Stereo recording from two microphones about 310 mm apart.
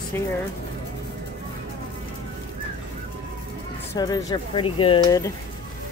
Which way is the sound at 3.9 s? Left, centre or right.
Centre.